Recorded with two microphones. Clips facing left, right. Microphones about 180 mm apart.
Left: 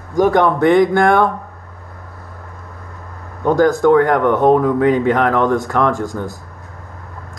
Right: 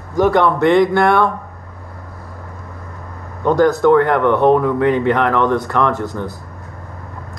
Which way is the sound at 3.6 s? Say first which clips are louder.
Even; 45° left (ahead or behind).